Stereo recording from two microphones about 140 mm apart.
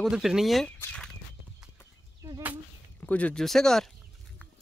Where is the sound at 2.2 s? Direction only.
20° right (ahead or behind).